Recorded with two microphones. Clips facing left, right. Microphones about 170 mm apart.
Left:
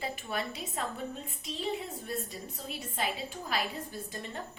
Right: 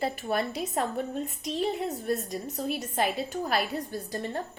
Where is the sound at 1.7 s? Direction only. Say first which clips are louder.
Right 8 dB; 70° right (ahead or behind).